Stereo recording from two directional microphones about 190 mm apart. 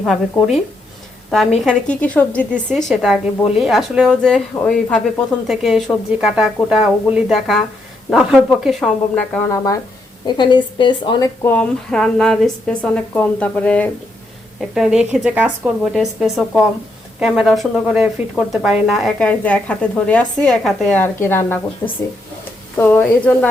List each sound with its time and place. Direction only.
0.0 s speech: centre (ahead or behind)
10.2 s a woman's voice: 25° left (ahead or behind)
11.4 s a woman's voice: 5° left (ahead or behind)
22.8 s a woman's voice: 10° left (ahead or behind)